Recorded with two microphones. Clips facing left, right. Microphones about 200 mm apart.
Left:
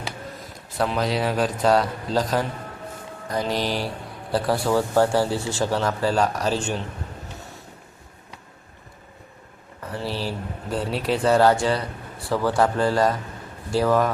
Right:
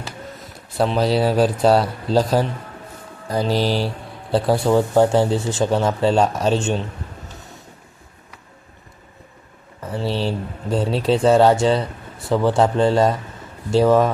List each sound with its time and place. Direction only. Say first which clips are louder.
0.8 s a man's voice: right 5 dB; 30° right (ahead or behind)
9.9 s speech: right 5 dB; 25° right (ahead or behind)